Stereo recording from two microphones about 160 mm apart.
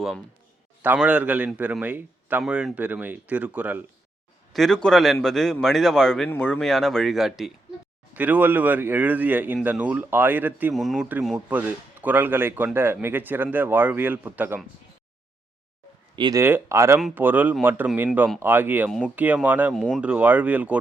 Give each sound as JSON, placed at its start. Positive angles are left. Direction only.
{"t": 0.8, "sound": "speech", "side_deg": -10}
{"t": 4.5, "sound": "speech", "side_deg": 5}
{"t": 10.8, "sound": "speech", "side_deg": 0}
{"t": 11.3, "sound": "speech", "side_deg": -10}
{"t": 16.1, "sound": "speech", "side_deg": -30}
{"t": 16.4, "sound": "speech", "side_deg": -15}
{"t": 19.7, "sound": "speech", "side_deg": 0}